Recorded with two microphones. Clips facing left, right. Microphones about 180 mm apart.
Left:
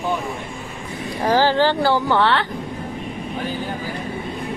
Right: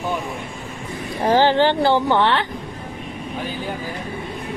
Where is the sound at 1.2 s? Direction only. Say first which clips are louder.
Right 1 dB; 20° right (ahead or behind).